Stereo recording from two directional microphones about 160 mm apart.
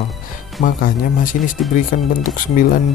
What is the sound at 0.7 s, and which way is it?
Speech, 60° left (ahead or behind).